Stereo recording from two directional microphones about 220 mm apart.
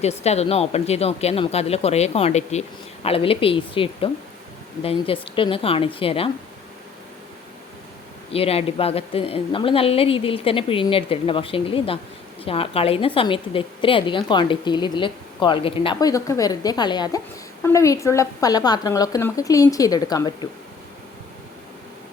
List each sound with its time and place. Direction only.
0.0 s a woman's voice: 30° left (ahead or behind)
8.3 s a woman's voice: 25° left (ahead or behind)